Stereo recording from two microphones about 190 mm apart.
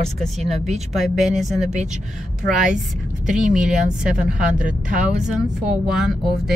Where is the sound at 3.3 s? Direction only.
5° right (ahead or behind).